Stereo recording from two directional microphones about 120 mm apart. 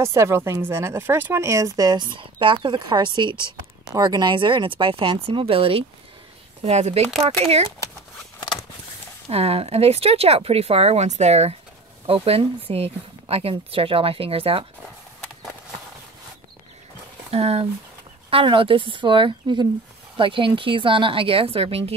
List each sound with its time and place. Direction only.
0.0 s a woman's voice: 25° right (ahead or behind); by 5.9 s 50° right (ahead or behind)
6.6 s speech: 65° right (ahead or behind)
9.3 s speech: 55° right (ahead or behind)
12.1 s speech: 50° right (ahead or behind)
17.3 s speech: 60° right (ahead or behind)
18.3 s speech: 45° right (ahead or behind)